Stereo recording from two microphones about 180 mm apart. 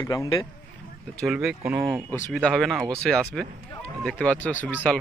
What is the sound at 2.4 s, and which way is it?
Speech, centre (ahead or behind).